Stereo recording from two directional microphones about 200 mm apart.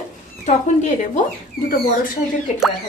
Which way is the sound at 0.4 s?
35° left (ahead or behind).